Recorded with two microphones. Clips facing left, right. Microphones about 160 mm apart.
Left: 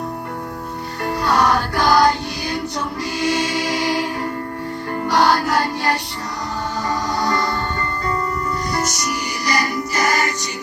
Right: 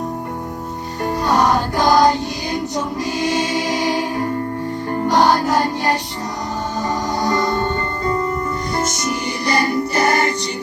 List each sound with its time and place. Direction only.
1.0 s music: 15° right (ahead or behind)
7.2 s music: 20° right (ahead or behind)
8.7 s music: 25° right (ahead or behind)